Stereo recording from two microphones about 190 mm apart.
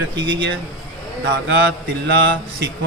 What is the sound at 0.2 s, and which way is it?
Speech, 75° right (ahead or behind).